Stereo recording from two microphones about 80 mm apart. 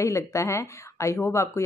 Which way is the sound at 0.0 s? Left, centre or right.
Left.